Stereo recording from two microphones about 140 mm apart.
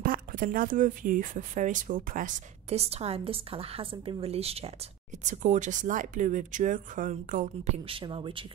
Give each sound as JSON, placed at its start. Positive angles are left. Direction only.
{"t": 0.0, "sound": "speech", "side_deg": -90}
{"t": 2.8, "sound": "a woman's voice", "side_deg": -45}
{"t": 5.2, "sound": "speech", "side_deg": -60}
{"t": 7.7, "sound": "speech", "side_deg": -40}